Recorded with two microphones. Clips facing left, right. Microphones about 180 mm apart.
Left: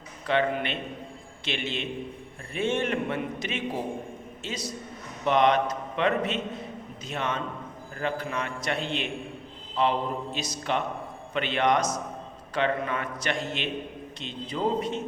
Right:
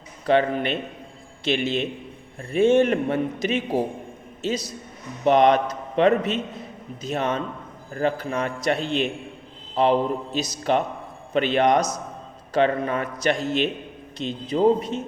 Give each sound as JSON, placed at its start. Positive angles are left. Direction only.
{"t": 0.3, "sound": "a man's voice", "side_deg": -40}